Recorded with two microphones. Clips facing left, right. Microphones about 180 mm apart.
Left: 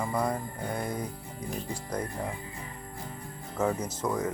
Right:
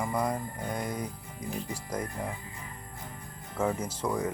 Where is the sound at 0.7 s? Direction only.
30° left (ahead or behind).